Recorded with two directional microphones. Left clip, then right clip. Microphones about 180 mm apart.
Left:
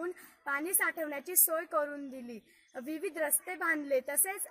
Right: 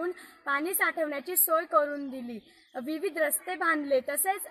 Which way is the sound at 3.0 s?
25° left (ahead or behind).